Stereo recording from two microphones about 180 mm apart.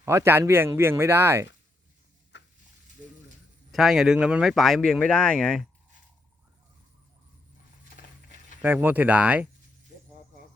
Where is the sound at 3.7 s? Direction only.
Centre (ahead or behind).